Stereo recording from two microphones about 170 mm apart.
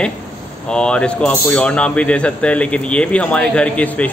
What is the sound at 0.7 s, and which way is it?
Speech, 5° left (ahead or behind).